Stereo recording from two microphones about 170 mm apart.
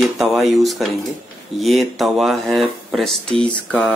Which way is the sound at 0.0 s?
Centre (ahead or behind).